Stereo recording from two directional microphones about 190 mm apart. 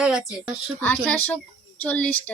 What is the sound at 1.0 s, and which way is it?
A woman's voice, 10° left (ahead or behind).